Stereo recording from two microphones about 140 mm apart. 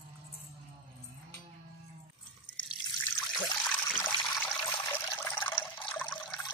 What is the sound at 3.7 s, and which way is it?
Water, 15° left (ahead or behind).